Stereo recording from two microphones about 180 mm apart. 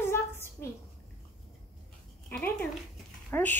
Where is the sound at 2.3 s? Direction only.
5° left (ahead or behind).